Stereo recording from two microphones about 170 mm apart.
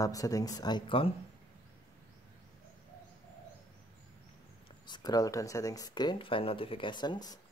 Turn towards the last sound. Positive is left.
turn(degrees=25)  # may be behind; listen again after turning